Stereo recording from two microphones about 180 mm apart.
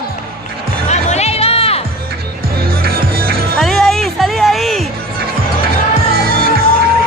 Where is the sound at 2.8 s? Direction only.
55° right (ahead or behind).